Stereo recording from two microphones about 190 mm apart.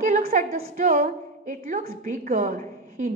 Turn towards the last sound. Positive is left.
turn(degrees=-40)  # may be behind; listen again after turning